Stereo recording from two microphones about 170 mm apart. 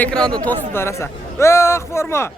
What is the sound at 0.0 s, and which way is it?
Speech, 5° left (ahead or behind).